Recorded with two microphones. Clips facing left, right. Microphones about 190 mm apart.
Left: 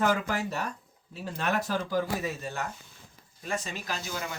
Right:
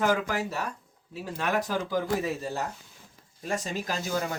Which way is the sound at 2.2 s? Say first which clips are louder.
Right 3 dB; 35° right (ahead or behind).